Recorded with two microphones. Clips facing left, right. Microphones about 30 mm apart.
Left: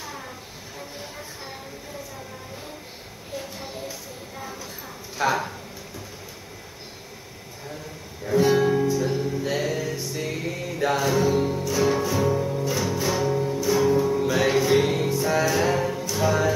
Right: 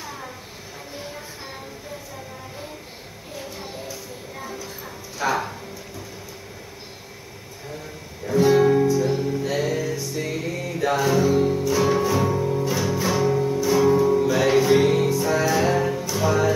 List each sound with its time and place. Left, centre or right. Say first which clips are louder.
0.0 s a sound: right 1 dB; centre
5.2 s speech: left 1 dB; left
8.3 s music: right 2 dB; centre
8.5 s music: right 4 dB; centre